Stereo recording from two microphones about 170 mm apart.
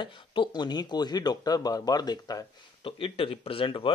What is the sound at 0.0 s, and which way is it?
Speech, 30° left (ahead or behind).